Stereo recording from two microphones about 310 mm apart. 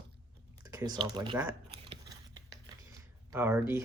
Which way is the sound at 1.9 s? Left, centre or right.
Centre.